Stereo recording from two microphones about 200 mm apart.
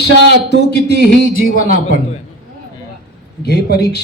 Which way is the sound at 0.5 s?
55° left (ahead or behind).